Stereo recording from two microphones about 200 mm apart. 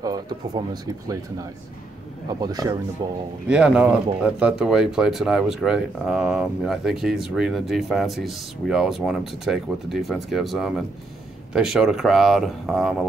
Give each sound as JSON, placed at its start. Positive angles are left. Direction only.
{"t": 0.0, "sound": "speech", "side_deg": -20}
{"t": 3.4, "sound": "speech", "side_deg": -5}